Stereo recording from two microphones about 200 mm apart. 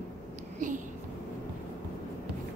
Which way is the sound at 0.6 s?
40° right (ahead or behind).